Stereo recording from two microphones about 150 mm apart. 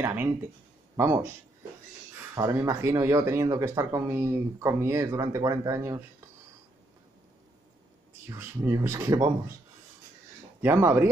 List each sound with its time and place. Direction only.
0.0 s a sound: 15° right (ahead or behind)
0.9 s speech: 15° right (ahead or behind)
2.3 s speech: 20° right (ahead or behind)
8.3 s speech: 20° right (ahead or behind)
10.6 s speech: 15° right (ahead or behind)